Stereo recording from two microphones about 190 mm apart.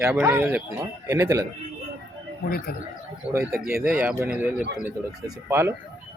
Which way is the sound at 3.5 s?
10° right (ahead or behind).